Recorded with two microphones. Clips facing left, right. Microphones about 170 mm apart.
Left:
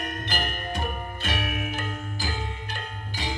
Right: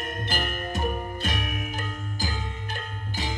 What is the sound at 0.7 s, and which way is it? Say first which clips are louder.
Music: right 3 dB; 40° right (ahead or behind).